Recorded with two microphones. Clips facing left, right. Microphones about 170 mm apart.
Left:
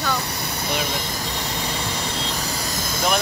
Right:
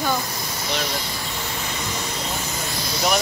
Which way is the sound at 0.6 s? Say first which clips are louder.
Left 1 dB; 55° left (ahead or behind).